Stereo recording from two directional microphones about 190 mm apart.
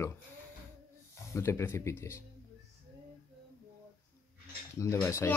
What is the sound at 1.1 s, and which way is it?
Speech, 15° left (ahead or behind).